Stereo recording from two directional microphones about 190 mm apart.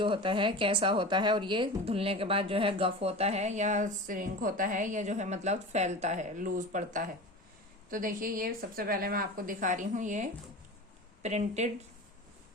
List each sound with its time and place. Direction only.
0.0 s a woman's voice: 25° right (ahead or behind)